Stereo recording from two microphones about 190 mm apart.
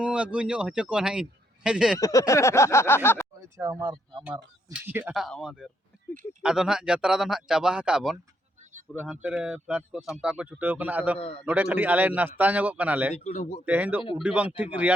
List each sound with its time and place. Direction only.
0.0 s a man's voice: 5° right (ahead or behind)
2.0 s a sound: 15° left (ahead or behind)
3.4 s speech: 15° right (ahead or behind)
11.2 s a man's voice: 30° left (ahead or behind)
11.4 s a man's voice: 10° right (ahead or behind)
13.1 s a man's voice: 35° left (ahead or behind)
13.7 s a man's voice: 10° right (ahead or behind)